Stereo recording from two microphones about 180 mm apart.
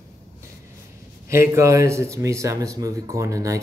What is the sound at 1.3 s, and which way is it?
Speech, 15° right (ahead or behind).